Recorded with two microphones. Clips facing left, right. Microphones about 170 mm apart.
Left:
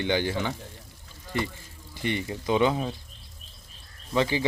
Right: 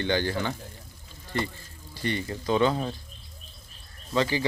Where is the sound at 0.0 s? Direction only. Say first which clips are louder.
Even; 15° left (ahead or behind).